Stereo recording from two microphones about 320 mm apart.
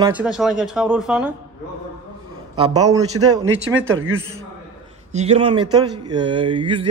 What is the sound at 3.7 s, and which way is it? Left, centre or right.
Speech, right.